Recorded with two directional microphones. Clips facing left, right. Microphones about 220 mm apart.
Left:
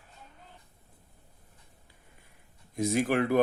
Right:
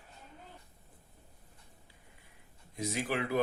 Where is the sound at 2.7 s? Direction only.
50° left (ahead or behind).